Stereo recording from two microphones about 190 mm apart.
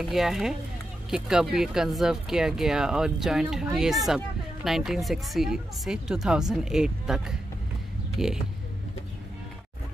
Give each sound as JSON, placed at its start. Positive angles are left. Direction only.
{"t": 0.0, "sound": "speech", "side_deg": 0}